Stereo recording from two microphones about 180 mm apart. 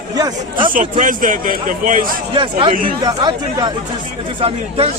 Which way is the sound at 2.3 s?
30° right (ahead or behind).